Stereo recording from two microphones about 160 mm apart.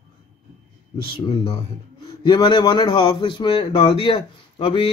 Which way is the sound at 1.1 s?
35° left (ahead or behind).